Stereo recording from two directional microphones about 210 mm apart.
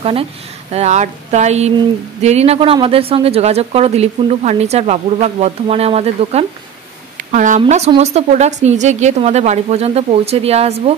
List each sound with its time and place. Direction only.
0.0 s a woman's voice: 25° right (ahead or behind)